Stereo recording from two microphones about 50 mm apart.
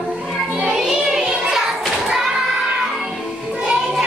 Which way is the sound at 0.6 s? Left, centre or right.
Centre.